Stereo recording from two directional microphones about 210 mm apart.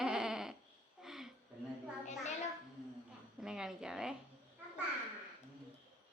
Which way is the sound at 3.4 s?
5° right (ahead or behind).